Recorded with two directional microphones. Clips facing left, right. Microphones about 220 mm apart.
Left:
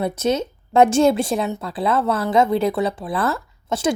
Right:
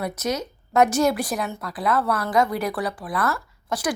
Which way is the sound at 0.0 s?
25° left (ahead or behind).